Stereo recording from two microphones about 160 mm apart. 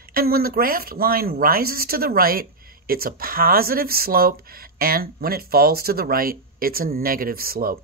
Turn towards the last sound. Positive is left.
turn(degrees=-70)  # may be behind; listen again after turning